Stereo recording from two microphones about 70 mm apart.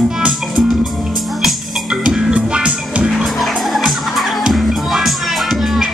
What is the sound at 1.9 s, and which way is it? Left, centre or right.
Music, centre.